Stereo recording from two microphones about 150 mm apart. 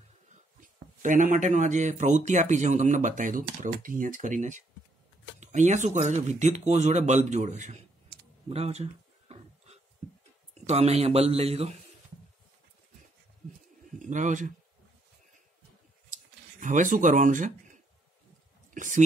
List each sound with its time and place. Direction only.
0.6 s speech: 60° right (ahead or behind); by 8.8 s 45° right (ahead or behind)
9.3 s a sound: 45° right (ahead or behind)
10.5 s speech: 45° right (ahead or behind)
13.8 s speech: 60° right (ahead or behind)
16.1 s a sound: 55° right (ahead or behind)
18.7 s speech: 60° right (ahead or behind)